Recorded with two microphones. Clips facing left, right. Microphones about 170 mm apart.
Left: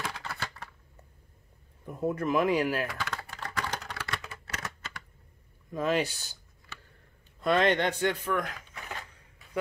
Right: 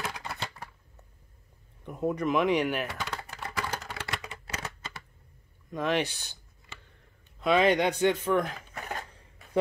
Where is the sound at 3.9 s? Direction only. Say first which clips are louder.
Right 1 dB; 20° right (ahead or behind).